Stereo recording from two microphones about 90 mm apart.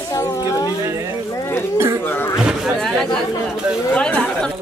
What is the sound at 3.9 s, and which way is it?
Speech, 15° left (ahead or behind).